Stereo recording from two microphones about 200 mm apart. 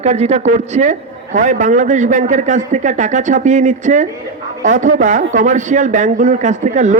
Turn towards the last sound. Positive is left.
turn(degrees=-35)  # may be behind; listen again after turning